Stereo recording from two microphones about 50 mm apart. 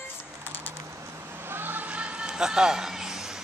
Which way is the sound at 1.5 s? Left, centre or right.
Right.